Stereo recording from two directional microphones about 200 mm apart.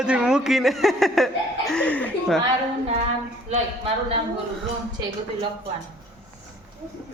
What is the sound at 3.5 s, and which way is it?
Speech, 30° right (ahead or behind).